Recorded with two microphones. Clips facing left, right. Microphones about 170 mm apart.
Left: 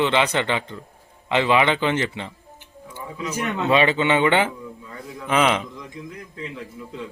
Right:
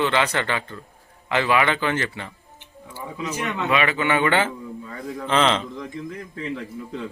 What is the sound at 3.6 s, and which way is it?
A man's voice, 30° left (ahead or behind).